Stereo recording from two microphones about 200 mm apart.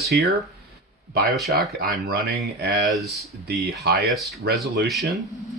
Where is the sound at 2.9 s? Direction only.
Centre (ahead or behind).